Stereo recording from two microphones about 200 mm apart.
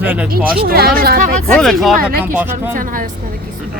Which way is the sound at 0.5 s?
50° right (ahead or behind).